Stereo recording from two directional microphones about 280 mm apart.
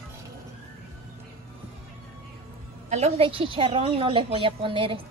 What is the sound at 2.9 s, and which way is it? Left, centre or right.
A woman's voice, right.